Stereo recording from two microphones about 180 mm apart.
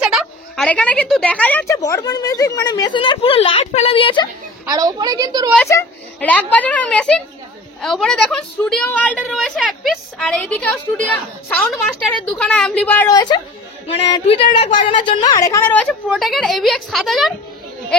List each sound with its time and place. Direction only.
0.0 s a woman's voice: centre (ahead or behind); by 4.3 s 30° left (ahead or behind)
4.6 s a woman's voice: 20° right (ahead or behind)
5.7 s a woman's voice: 15° left (ahead or behind)
13.1 s a woman's voice: 20° left (ahead or behind); by 17.3 s centre (ahead or behind)